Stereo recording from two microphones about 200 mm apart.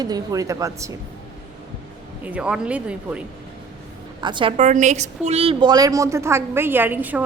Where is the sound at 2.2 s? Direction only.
5° right (ahead or behind).